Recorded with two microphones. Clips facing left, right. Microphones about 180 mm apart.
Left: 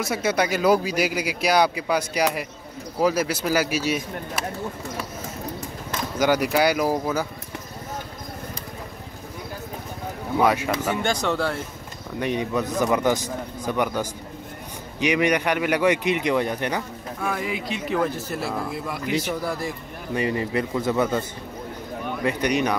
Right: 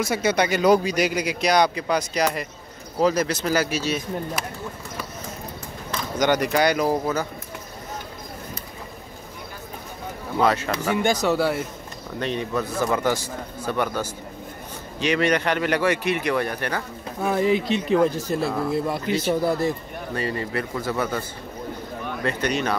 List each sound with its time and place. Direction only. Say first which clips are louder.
0.0 s a man's voice: right 1 dB; centre (ahead or behind)
6.1 s a man's voice: even; 5° left (ahead or behind)
10.4 s a man's voice: even; 10° left (ahead or behind)
11.0 s speech: right 3 dB; 10° right (ahead or behind)
12.2 s a man's voice: left 1 dB; 15° left (ahead or behind)
17.4 s speech: right 8 dB; 30° right (ahead or behind)
20.2 s a man's voice: left 3 dB; 15° left (ahead or behind)